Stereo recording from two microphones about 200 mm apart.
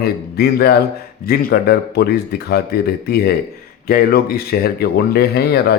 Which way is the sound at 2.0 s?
50° left (ahead or behind).